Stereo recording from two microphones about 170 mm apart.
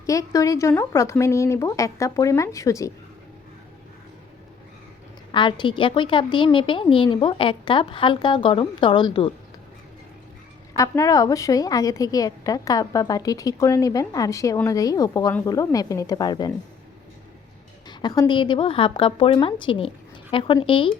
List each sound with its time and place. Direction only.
0.0 s a woman's voice: 20° left (ahead or behind)
5.3 s a woman's voice: 30° left (ahead or behind)
10.8 s a woman's voice: 20° left (ahead or behind)
17.8 s a woman's voice: 25° left (ahead or behind)